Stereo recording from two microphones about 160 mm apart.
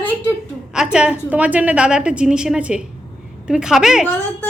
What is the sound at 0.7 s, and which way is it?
A woman's voice, 5° right (ahead or behind).